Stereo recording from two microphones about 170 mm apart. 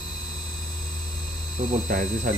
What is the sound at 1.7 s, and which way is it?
Speech, 45° right (ahead or behind).